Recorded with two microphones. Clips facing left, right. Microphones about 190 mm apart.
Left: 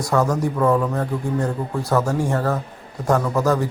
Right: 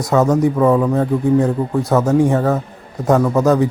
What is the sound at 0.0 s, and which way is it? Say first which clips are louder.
Speech: right 6 dB; 20° right (ahead or behind).